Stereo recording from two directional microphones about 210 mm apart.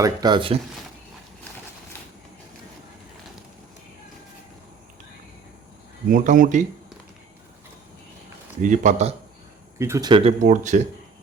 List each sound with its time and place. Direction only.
0.0 s speech: 20° right (ahead or behind)
6.1 s speech: 40° right (ahead or behind)
8.6 s speech: 35° right (ahead or behind)
9.7 s speech: 15° right (ahead or behind)
10.4 s speech: 35° right (ahead or behind)